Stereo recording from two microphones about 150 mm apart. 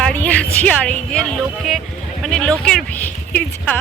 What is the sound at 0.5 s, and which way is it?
Speech, 10° left (ahead or behind).